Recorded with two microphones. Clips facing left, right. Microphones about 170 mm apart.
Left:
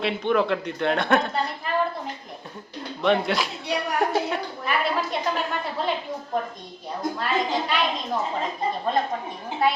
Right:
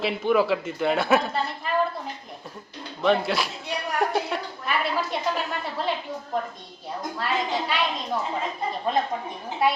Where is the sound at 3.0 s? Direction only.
Centre (ahead or behind).